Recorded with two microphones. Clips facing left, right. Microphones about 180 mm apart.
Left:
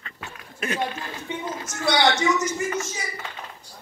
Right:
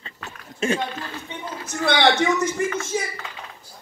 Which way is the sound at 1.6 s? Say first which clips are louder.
Right 2 dB; 60° right (ahead or behind).